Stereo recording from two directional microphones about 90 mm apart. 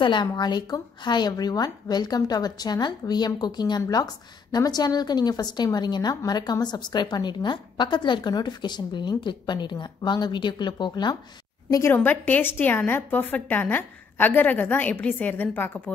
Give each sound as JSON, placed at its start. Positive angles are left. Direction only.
{"t": 0.0, "sound": "a woman's voice", "side_deg": 60}
{"t": 11.9, "sound": "a woman's voice", "side_deg": 20}